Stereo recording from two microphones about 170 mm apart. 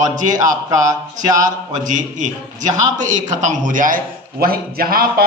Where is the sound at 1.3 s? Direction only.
45° right (ahead or behind).